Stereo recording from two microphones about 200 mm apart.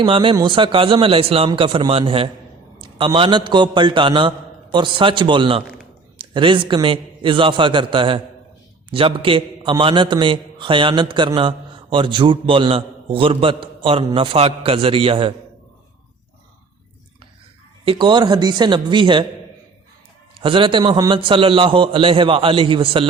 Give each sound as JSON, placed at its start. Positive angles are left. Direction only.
{"t": 0.0, "sound": "a man's voice", "side_deg": -25}
{"t": 17.8, "sound": "a man's voice", "side_deg": -25}
{"t": 20.4, "sound": "a man's voice", "side_deg": -25}